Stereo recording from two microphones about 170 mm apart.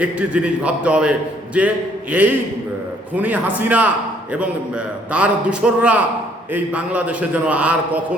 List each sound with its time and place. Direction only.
0.0 s a man's voice: 5° right (ahead or behind)
5.1 s a man's voice: 5° right (ahead or behind)